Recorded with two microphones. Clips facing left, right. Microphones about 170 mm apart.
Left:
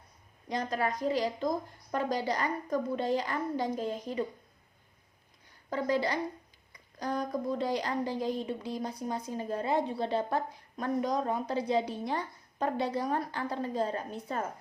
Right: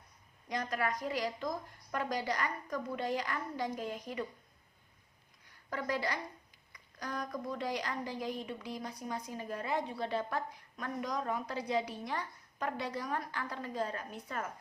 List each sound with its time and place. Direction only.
0.4 s a woman's voice: 30° left (ahead or behind)
5.7 s a woman's voice: 30° left (ahead or behind)